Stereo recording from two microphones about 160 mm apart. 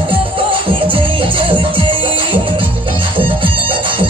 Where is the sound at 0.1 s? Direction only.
30° right (ahead or behind).